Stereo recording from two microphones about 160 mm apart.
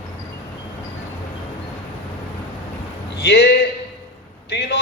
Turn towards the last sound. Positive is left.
turn(degrees=90)